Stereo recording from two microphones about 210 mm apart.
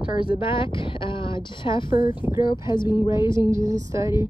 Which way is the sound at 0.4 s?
25° left (ahead or behind).